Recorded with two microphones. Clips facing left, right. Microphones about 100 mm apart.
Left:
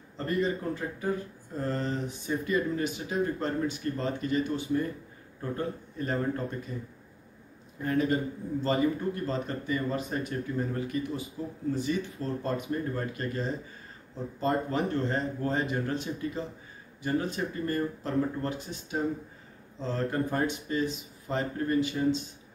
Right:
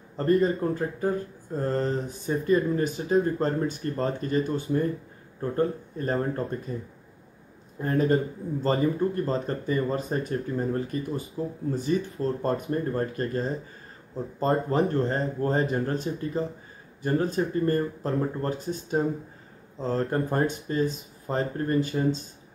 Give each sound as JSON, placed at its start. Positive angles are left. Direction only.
{"t": 0.2, "sound": "speech", "side_deg": -40}
{"t": 7.8, "sound": "speech", "side_deg": -40}
{"t": 14.4, "sound": "speech", "side_deg": -35}